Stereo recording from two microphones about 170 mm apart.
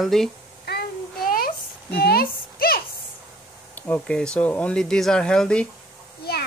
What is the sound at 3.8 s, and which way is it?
Speech, 10° left (ahead or behind).